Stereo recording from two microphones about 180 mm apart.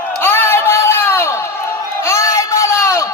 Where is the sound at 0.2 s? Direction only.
10° left (ahead or behind).